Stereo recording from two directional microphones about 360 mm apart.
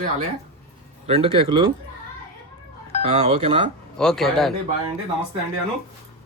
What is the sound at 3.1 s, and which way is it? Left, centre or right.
Speech, centre.